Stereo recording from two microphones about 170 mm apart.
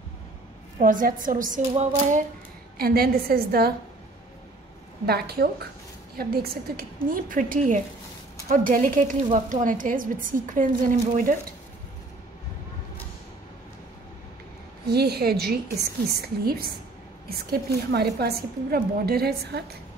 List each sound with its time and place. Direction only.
0.7 s a woman's voice: 50° right (ahead or behind)
2.8 s a woman's voice: 65° right (ahead or behind)
5.0 s a woman's voice: 70° right (ahead or behind); by 11.3 s 50° right (ahead or behind)
14.9 s a woman's voice: 70° right (ahead or behind)